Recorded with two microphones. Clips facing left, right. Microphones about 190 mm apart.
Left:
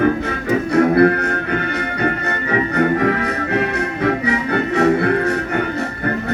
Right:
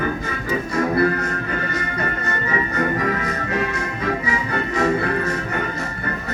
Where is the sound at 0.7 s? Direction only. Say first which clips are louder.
Left 7 dB; 65° left (ahead or behind).